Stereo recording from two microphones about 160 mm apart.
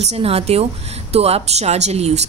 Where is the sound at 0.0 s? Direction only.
40° right (ahead or behind).